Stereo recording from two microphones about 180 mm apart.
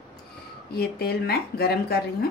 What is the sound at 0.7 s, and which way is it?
Speech, 60° left (ahead or behind).